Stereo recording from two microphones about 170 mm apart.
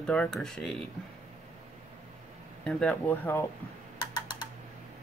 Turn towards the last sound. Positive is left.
turn(degrees=25)  # may be behind; listen again after turning